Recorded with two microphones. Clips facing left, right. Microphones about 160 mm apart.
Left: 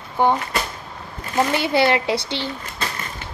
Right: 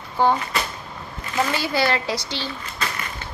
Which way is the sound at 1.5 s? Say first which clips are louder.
Left 5 dB; 25° left (ahead or behind).